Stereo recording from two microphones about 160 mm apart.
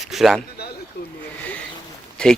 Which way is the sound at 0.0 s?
Centre (ahead or behind).